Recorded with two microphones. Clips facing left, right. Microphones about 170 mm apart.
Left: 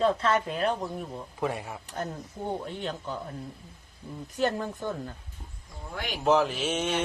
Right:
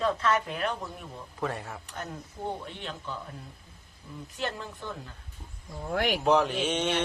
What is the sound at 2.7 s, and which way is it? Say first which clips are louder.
Speech: left 5 dB; 40° left (ahead or behind).